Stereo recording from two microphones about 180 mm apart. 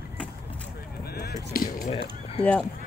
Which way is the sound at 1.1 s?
60° left (ahead or behind).